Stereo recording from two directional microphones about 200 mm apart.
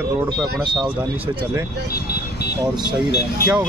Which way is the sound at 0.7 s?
5° right (ahead or behind).